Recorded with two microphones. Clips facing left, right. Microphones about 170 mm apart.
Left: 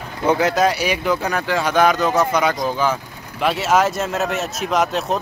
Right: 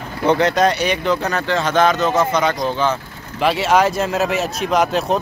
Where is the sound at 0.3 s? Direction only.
5° left (ahead or behind).